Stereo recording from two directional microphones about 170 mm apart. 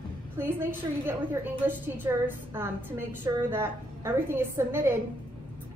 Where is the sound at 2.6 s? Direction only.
10° right (ahead or behind).